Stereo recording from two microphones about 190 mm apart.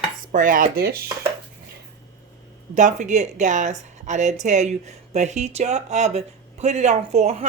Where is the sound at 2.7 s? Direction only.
40° right (ahead or behind).